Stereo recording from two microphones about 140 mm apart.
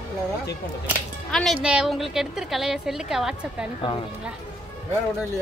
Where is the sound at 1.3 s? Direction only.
Centre (ahead or behind).